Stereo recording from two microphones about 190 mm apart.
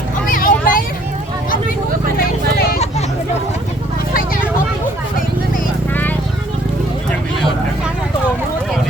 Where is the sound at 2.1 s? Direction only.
55° left (ahead or behind).